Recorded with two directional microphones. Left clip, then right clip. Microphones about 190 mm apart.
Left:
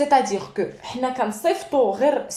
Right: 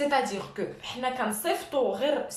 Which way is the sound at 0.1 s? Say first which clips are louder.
Left 8 dB; 30° left (ahead or behind).